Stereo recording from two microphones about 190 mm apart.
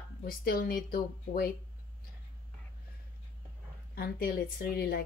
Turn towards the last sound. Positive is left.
turn(degrees=55)  # may be behind; listen again after turning